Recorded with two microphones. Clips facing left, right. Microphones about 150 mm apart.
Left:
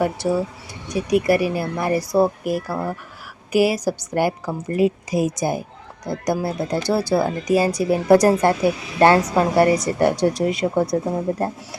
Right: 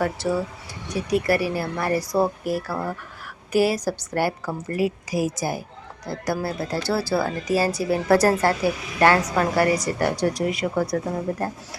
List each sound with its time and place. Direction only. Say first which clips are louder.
0.0 s a woman's voice: left 3 dB; 15° left (ahead or behind)